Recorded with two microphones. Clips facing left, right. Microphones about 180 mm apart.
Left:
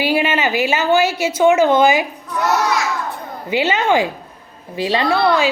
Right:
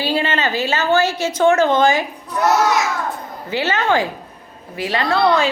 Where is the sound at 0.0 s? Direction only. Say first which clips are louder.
Left 2 dB; 10° left (ahead or behind).